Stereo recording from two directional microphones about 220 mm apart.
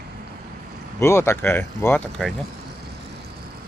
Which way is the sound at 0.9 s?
10° left (ahead or behind).